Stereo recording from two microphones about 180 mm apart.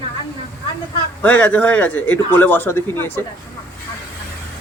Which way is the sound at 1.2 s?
10° left (ahead or behind).